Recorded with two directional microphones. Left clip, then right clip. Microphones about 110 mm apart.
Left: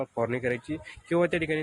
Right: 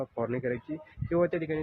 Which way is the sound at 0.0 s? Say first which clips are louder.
Left 3 dB; 25° left (ahead or behind).